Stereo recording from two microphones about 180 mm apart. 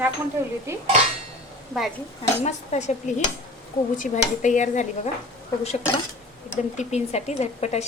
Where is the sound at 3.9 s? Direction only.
45° left (ahead or behind).